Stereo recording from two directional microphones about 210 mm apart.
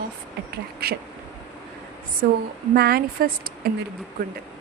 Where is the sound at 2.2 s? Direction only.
45° right (ahead or behind).